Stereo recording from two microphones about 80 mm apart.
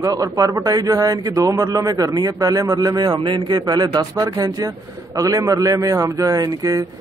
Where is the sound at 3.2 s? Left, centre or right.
Right.